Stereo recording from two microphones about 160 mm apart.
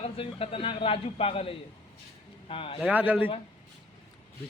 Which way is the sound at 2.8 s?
10° right (ahead or behind).